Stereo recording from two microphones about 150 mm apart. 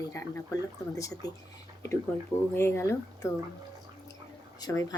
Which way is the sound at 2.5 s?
20° left (ahead or behind).